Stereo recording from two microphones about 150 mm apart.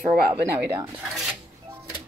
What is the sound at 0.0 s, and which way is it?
Speech, 75° right (ahead or behind).